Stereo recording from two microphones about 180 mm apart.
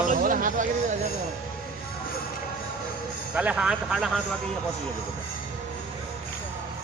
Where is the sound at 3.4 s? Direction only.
5° right (ahead or behind).